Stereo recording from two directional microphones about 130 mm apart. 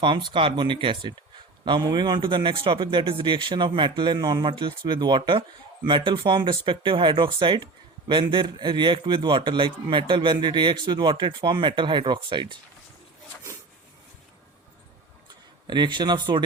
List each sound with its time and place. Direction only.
0.0 s a man's voice: 40° right (ahead or behind)
15.6 s a man's voice: 35° right (ahead or behind)